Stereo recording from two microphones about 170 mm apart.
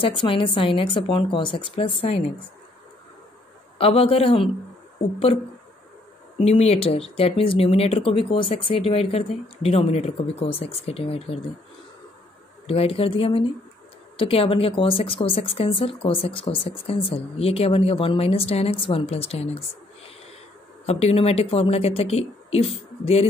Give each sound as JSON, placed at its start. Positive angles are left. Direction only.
{"t": 0.0, "sound": "speech", "side_deg": 30}
{"t": 3.7, "sound": "speech", "side_deg": 35}
{"t": 6.4, "sound": "speech", "side_deg": 40}
{"t": 12.6, "sound": "speech", "side_deg": 35}
{"t": 20.8, "sound": "speech", "side_deg": 35}